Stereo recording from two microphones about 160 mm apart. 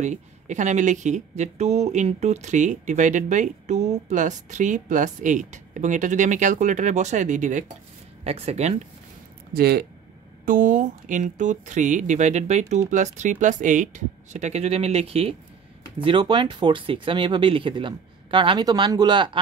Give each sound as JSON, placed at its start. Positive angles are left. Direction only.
{"t": 0.0, "sound": "speech", "side_deg": -50}
{"t": 8.2, "sound": "speech", "side_deg": -40}
{"t": 9.5, "sound": "speech", "side_deg": -75}
{"t": 10.4, "sound": "speech", "side_deg": -55}